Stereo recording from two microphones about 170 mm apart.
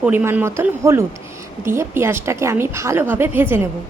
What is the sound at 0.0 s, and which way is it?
Speech, 10° right (ahead or behind).